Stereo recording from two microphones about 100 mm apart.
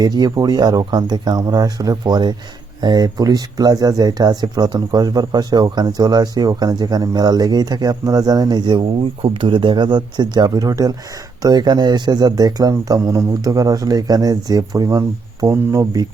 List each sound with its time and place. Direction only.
0.0 s speech: 40° right (ahead or behind)
8.8 s speech: 65° right (ahead or behind); by 16.0 s 35° right (ahead or behind)